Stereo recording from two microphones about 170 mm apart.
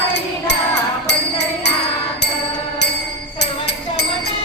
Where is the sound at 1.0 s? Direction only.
90° left.